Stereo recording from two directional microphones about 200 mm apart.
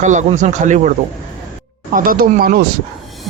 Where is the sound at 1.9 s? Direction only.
45° right (ahead or behind).